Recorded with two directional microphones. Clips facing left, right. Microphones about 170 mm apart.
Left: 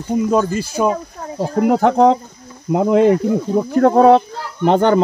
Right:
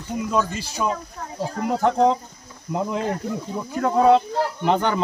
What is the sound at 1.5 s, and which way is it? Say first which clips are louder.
Speech: left 8 dB; 65° left (ahead or behind).